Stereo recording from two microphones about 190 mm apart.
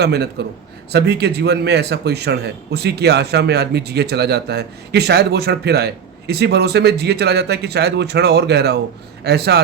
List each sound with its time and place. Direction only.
0.0 s speech: 60° right (ahead or behind)